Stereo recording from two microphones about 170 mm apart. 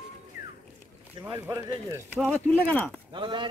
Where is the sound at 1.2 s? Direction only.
15° right (ahead or behind).